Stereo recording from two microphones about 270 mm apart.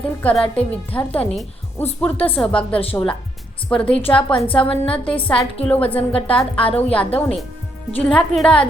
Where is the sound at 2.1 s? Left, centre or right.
Left.